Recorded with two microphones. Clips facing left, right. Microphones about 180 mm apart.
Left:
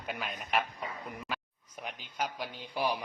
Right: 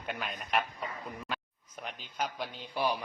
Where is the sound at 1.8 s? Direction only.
10° left (ahead or behind).